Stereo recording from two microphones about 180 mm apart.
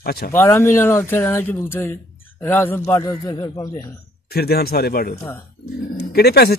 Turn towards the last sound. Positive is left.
turn(degrees=60)  # may be behind; listen again after turning